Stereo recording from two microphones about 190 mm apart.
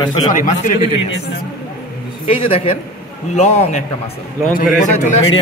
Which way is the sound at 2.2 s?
30° left (ahead or behind).